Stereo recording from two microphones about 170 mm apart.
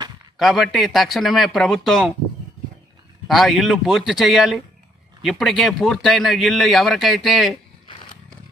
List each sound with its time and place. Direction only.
0.4 s speech: centre (ahead or behind)
3.3 s speech: centre (ahead or behind)